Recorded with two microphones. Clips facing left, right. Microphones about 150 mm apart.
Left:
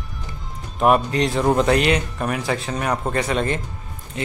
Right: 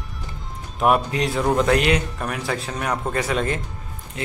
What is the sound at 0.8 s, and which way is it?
Speech, centre (ahead or behind).